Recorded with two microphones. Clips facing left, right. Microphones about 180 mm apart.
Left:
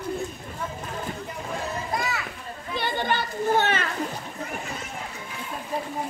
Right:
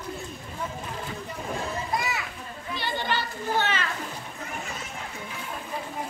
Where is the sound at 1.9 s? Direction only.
20° right (ahead or behind).